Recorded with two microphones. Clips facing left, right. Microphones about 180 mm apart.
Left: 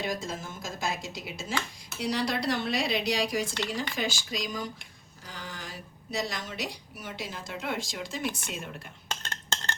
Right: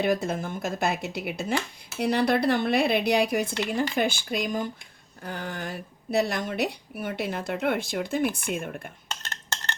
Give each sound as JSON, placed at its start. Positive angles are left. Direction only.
{"t": 0.0, "sound": "a woman's voice", "side_deg": -60}